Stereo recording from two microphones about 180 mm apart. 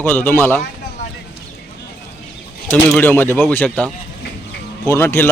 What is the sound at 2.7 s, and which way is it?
A man's voice, 5° left (ahead or behind).